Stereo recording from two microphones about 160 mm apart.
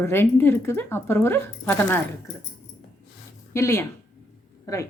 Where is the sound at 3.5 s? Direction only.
15° left (ahead or behind).